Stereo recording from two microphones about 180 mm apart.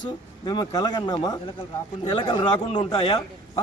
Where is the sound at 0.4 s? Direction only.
25° left (ahead or behind).